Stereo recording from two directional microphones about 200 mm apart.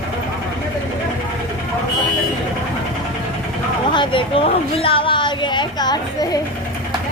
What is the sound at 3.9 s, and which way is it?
A woman's voice, 25° left (ahead or behind).